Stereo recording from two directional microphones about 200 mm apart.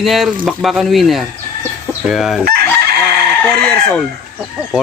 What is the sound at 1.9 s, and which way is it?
Chicken, centre (ahead or behind).